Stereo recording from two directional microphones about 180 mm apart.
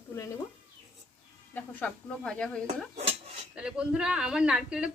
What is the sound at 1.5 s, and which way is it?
Speech, 5° left (ahead or behind).